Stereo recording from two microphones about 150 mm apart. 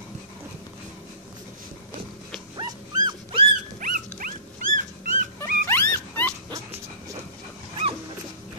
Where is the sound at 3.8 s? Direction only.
65° right (ahead or behind).